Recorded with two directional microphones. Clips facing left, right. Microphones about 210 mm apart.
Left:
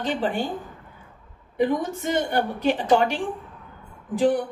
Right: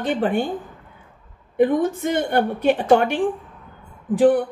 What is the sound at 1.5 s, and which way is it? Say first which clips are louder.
A woman's voice: right 5 dB; 55° right (ahead or behind).